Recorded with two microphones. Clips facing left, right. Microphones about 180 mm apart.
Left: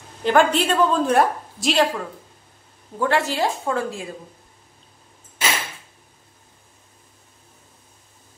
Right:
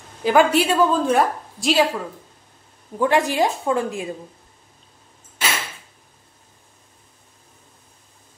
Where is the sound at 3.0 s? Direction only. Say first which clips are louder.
Right 3 dB; 15° right (ahead or behind).